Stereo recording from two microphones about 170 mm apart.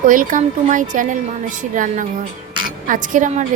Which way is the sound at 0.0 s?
50° right (ahead or behind).